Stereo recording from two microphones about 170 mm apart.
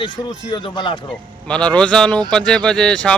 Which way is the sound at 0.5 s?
25° left (ahead or behind).